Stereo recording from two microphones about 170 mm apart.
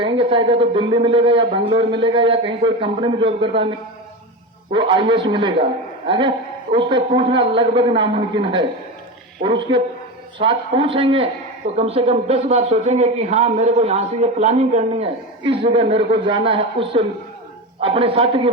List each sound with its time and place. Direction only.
0.0 s a man's voice: 30° right (ahead or behind)
4.7 s a man's voice: 30° right (ahead or behind)